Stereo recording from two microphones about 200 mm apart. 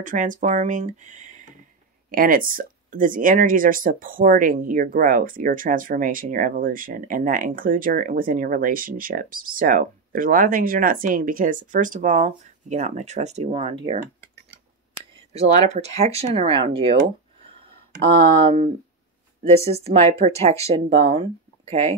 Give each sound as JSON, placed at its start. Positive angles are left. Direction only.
{"t": 0.0, "sound": "speech", "side_deg": -40}
{"t": 15.0, "sound": "a sound", "side_deg": -30}
{"t": 15.7, "sound": "speech", "side_deg": -35}
{"t": 18.4, "sound": "speech", "side_deg": -25}